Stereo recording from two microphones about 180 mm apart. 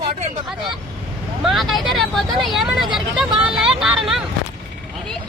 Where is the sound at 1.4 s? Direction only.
Centre (ahead or behind).